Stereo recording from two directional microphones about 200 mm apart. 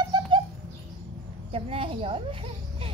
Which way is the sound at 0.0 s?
20° right (ahead or behind).